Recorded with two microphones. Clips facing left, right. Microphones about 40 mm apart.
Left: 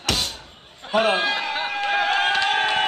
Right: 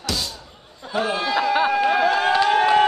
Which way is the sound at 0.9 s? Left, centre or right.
Left.